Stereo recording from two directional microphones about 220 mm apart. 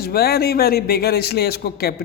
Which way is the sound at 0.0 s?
45° left (ahead or behind).